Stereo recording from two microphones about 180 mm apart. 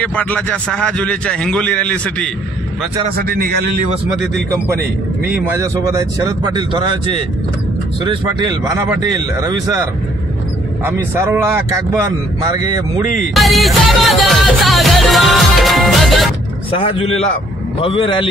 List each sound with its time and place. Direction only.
0.0 s a man's voice: 5° left (ahead or behind)
3.2 s a man's voice: 60° right (ahead or behind)
5.3 s speech: 15° right (ahead or behind)
10.9 s a man's voice: 10° right (ahead or behind)
13.3 s music: centre (ahead or behind)
16.7 s a man's voice: 30° left (ahead or behind)